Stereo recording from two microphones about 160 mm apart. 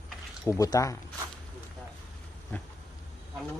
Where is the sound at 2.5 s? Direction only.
10° left (ahead or behind).